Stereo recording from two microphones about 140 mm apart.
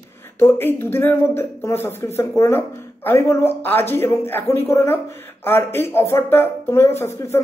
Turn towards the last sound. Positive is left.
turn(degrees=20)  # may be behind; listen again after turning